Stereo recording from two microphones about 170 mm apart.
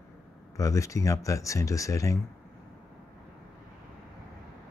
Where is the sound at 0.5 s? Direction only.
20° left (ahead or behind).